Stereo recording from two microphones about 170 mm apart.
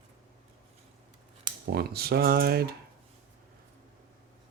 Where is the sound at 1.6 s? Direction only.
70° right (ahead or behind).